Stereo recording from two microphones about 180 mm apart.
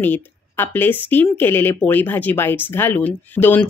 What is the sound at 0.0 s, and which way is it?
A woman's voice, 10° left (ahead or behind).